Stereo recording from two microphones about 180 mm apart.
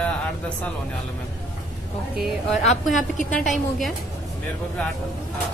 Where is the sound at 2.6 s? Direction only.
40° left (ahead or behind).